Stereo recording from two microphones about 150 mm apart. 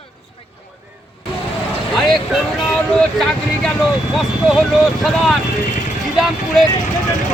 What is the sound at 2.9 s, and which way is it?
Speech, 5° left (ahead or behind).